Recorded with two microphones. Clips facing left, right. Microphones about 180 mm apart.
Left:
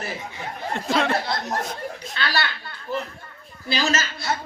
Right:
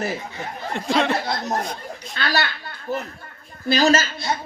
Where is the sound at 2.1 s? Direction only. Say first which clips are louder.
Right 3 dB; 45° right (ahead or behind).